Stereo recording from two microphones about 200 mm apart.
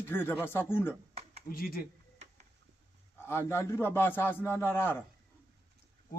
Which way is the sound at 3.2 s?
10° left (ahead or behind).